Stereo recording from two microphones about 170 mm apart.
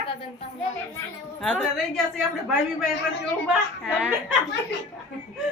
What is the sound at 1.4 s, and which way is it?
Speech, centre (ahead or behind).